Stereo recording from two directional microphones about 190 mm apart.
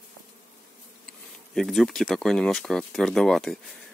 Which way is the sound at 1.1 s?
Centre (ahead or behind).